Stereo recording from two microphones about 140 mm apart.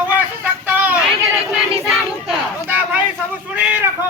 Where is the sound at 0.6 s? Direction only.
10° right (ahead or behind).